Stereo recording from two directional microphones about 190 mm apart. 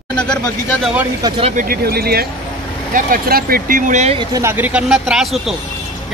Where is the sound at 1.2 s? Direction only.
25° right (ahead or behind).